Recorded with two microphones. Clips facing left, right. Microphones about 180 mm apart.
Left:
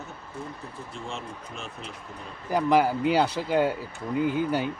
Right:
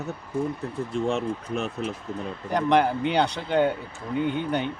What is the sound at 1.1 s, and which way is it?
Speech, 65° right (ahead or behind).